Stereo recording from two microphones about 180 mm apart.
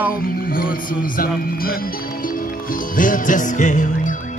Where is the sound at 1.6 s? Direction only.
55° left (ahead or behind).